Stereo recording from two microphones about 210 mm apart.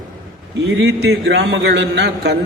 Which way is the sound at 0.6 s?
60° right (ahead or behind).